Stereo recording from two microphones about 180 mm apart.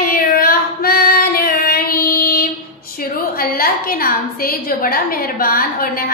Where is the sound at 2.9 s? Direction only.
55° left (ahead or behind).